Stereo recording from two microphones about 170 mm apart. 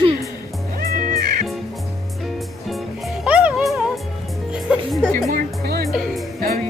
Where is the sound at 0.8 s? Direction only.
60° right (ahead or behind).